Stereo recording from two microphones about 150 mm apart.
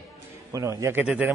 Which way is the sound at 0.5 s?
20° right (ahead or behind).